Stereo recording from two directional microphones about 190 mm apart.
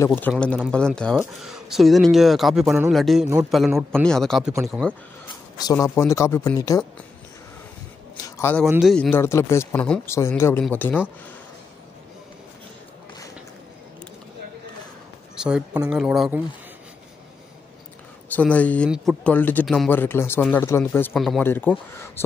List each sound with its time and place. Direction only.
0.0 s speech: 10° left (ahead or behind)
5.3 s speech: 20° left (ahead or behind)
8.4 s a man's voice: 10° left (ahead or behind)
8.6 s speech: centre (ahead or behind)
15.4 s speech: 5° right (ahead or behind)
18.3 s speech: 5° left (ahead or behind)
21.1 s speech: centre (ahead or behind)
21.4 s speech: 10° left (ahead or behind)